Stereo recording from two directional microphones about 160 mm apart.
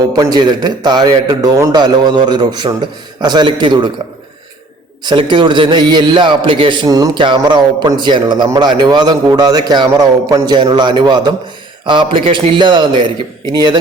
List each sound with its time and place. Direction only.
0.1 s a man's voice: 25° right (ahead or behind)
5.0 s a man's voice: 30° right (ahead or behind)